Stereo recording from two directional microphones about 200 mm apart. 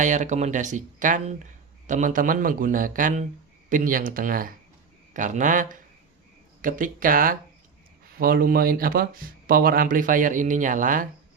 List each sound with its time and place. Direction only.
0.0 s a man's voice: 35° right (ahead or behind)